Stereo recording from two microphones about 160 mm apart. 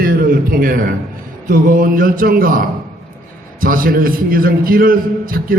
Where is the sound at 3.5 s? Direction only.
60° right (ahead or behind).